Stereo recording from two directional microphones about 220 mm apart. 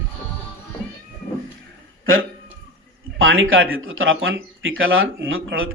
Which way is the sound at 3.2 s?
65° right (ahead or behind).